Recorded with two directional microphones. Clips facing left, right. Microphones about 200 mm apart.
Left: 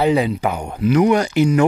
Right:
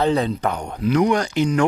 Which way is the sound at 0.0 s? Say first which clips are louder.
Left 3 dB; 10° left (ahead or behind).